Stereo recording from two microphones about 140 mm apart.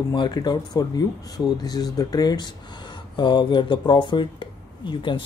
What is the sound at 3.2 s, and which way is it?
Speech, 35° left (ahead or behind).